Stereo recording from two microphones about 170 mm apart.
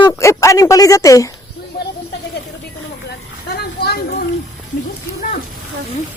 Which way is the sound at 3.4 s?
70° left (ahead or behind).